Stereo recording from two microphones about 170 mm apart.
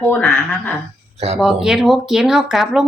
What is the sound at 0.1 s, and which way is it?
Speech, 5° left (ahead or behind).